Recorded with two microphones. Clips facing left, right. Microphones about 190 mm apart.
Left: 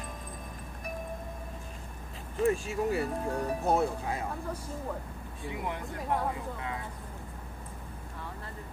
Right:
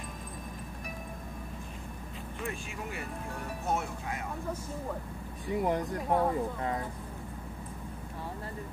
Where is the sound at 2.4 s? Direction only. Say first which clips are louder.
Left 12 dB; 35° left (ahead or behind).